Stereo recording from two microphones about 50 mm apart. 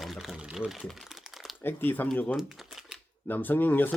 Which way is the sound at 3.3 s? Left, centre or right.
Left.